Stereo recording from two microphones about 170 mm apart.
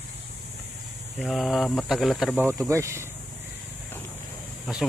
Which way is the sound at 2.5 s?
15° right (ahead or behind).